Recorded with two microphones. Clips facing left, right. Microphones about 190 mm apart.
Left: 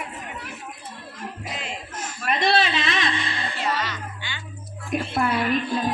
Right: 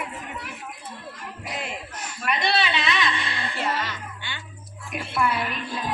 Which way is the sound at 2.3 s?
45° left (ahead or behind).